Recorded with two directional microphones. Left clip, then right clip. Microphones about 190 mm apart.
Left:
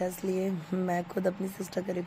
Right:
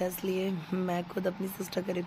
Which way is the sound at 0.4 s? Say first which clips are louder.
Left 1 dB; centre (ahead or behind).